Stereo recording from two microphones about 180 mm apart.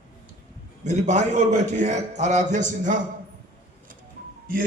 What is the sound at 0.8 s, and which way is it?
A man's voice, 40° right (ahead or behind).